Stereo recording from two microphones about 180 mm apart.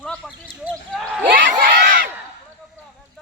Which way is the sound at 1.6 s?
50° right (ahead or behind).